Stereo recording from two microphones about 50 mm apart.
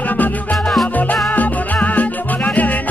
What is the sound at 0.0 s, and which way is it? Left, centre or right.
Music, left.